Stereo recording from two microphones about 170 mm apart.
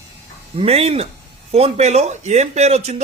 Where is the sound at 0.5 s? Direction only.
35° right (ahead or behind).